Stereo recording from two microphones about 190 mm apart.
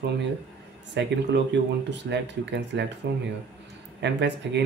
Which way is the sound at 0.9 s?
65° right (ahead or behind).